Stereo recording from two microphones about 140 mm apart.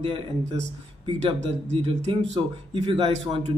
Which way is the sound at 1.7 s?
45° right (ahead or behind).